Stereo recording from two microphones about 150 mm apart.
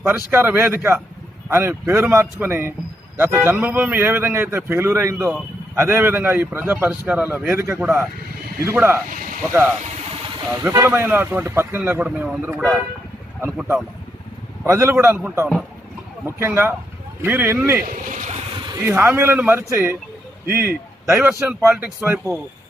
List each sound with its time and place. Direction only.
0.3 s a man's voice: 15° right (ahead or behind)
9.0 s speech: 65° right (ahead or behind)
9.5 s a man's voice: 15° right (ahead or behind)
17.8 s speech: 60° right (ahead or behind)
18.7 s a man's voice: 15° right (ahead or behind)